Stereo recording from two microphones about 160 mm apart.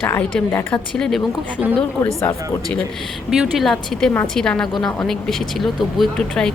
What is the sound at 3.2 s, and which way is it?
Speech, centre (ahead or behind).